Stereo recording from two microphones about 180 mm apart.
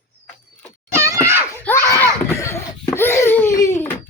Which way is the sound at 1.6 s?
15° left (ahead or behind).